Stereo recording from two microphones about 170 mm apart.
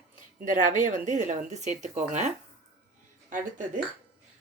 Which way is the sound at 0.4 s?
50° right (ahead or behind).